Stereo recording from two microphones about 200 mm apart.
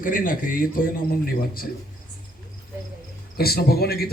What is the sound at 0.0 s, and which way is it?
Speech, 45° left (ahead or behind).